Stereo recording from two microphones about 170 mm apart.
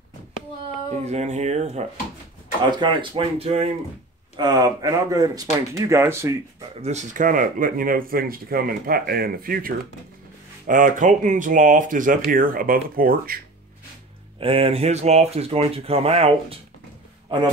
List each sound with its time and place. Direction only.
1.0 s speech: 40° right (ahead or behind)
2.8 s speech: 30° right (ahead or behind)
4.4 s speech: 25° right (ahead or behind)
6.8 s speech: 40° right (ahead or behind); by 13.4 s 60° right (ahead or behind)
14.4 s speech: 35° right (ahead or behind)